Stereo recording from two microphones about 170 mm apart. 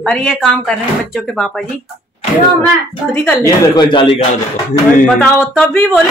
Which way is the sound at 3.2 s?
20° left (ahead or behind).